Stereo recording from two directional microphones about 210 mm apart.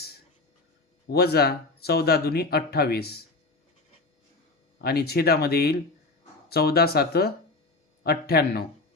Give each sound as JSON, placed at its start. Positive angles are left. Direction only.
{"t": 1.1, "sound": "speech", "side_deg": 50}
{"t": 4.8, "sound": "speech", "side_deg": 50}